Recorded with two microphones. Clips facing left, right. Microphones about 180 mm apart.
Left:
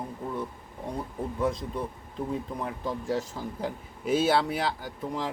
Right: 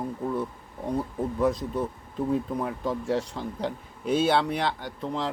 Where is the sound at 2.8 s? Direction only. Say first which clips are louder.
Right 1 dB; centre (ahead or behind).